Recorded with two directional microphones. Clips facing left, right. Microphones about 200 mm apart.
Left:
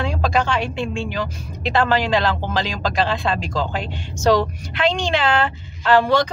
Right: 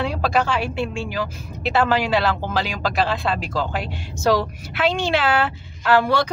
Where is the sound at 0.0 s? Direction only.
5° right (ahead or behind).